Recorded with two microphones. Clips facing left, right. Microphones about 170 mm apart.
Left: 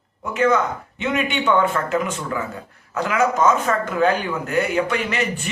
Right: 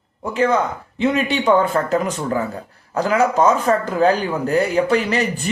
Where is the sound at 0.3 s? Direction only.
30° right (ahead or behind).